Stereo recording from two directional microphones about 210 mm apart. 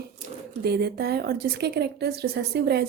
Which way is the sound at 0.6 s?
50° right (ahead or behind).